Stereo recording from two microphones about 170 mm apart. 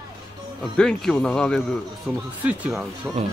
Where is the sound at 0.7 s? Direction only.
5° left (ahead or behind).